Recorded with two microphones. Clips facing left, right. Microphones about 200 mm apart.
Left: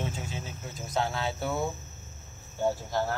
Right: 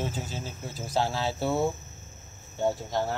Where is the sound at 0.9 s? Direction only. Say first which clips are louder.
Right 2 dB; 30° right (ahead or behind).